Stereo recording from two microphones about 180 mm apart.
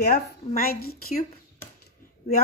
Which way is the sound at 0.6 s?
55° left (ahead or behind).